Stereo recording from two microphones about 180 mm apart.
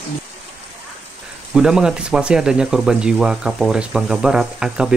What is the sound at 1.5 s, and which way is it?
Speech, 5° right (ahead or behind).